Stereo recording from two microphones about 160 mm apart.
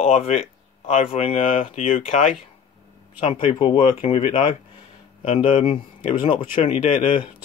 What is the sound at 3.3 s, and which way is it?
Speech, 35° left (ahead or behind).